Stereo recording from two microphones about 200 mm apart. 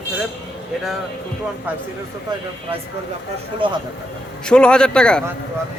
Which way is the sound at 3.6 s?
25° right (ahead or behind).